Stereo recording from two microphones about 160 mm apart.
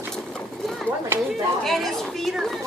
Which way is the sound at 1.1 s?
15° right (ahead or behind).